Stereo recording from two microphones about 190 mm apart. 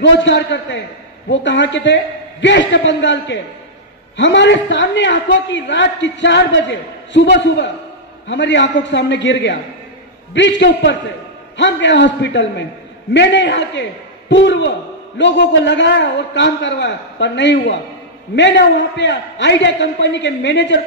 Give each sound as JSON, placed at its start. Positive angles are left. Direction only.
{"t": 0.0, "sound": "a woman's voice", "side_deg": 70}